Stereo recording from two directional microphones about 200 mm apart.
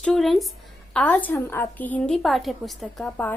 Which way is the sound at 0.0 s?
Centre (ahead or behind).